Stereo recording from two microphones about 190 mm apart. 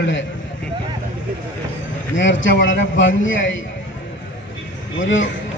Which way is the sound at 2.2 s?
80° left.